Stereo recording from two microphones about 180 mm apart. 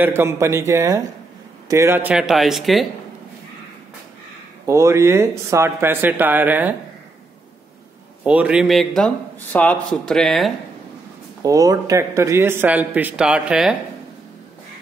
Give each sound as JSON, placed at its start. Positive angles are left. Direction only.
{"t": 0.0, "sound": "a man's voice", "side_deg": -15}
{"t": 4.6, "sound": "a man's voice", "side_deg": -15}
{"t": 8.2, "sound": "a man's voice", "side_deg": -5}
{"t": 11.4, "sound": "a man's voice", "side_deg": -20}